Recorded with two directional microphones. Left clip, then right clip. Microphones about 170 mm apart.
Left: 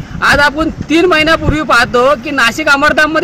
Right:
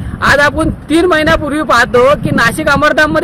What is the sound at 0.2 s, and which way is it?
A man's voice, 25° right (ahead or behind).